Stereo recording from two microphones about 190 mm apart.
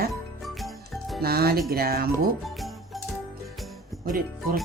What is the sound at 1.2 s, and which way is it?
Speech, 55° right (ahead or behind).